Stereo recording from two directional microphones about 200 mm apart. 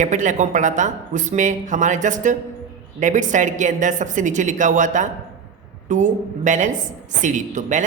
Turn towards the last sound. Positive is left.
turn(degrees=-40)  # may be behind; listen again after turning